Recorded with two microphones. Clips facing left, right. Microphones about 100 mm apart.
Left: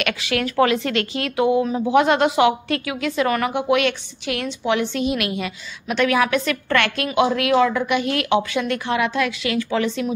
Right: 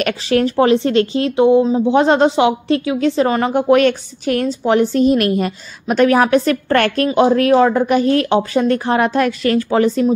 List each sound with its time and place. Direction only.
0.0 s speech: 35° right (ahead or behind)
3.5 s speech: 40° right (ahead or behind)